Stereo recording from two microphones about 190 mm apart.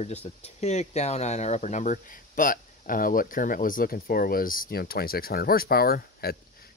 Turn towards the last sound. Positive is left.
turn(degrees=55)  # may be behind; listen again after turning